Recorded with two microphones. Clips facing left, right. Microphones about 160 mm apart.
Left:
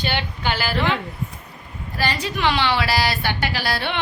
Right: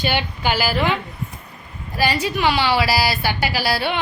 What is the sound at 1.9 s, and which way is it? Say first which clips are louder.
A woman's voice: right 4 dB; 10° right (ahead or behind).